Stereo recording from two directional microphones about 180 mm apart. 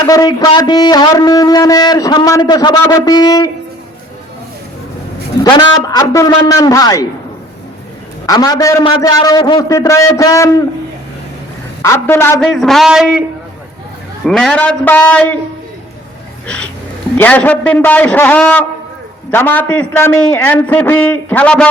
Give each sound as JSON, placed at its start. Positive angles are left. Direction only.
{"t": 0.0, "sound": "speech", "side_deg": 20}
{"t": 5.4, "sound": "a man's voice", "side_deg": 25}
{"t": 8.3, "sound": "speech", "side_deg": 20}
{"t": 11.8, "sound": "a man's voice", "side_deg": 15}
{"t": 12.5, "sound": "speech", "side_deg": 0}
{"t": 14.3, "sound": "a man's voice", "side_deg": 5}
{"t": 17.2, "sound": "a man's voice", "side_deg": 10}